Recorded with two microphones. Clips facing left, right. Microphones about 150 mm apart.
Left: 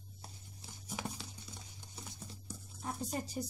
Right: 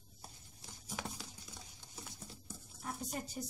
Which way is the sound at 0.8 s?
Centre (ahead or behind).